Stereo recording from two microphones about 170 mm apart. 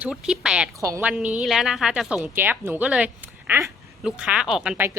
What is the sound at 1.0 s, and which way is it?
A woman's voice, 5° right (ahead or behind).